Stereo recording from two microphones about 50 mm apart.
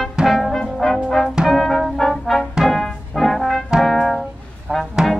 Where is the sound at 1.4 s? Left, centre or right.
Centre.